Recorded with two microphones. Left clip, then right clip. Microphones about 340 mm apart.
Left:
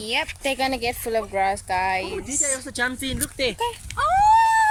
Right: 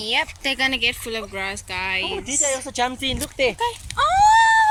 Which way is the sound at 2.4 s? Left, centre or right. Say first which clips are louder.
Right 3 dB; centre.